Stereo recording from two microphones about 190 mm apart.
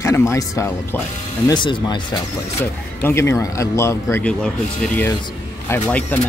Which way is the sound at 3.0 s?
10° left (ahead or behind).